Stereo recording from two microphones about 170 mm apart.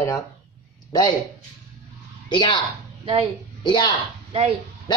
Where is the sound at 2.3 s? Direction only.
25° left (ahead or behind).